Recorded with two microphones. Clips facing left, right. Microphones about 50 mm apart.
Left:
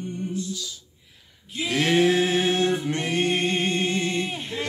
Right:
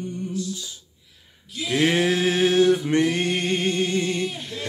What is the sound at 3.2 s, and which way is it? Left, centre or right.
A capella, left.